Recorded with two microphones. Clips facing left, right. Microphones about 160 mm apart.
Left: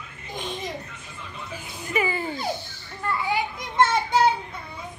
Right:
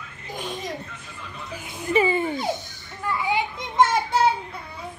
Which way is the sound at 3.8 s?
5° right (ahead or behind).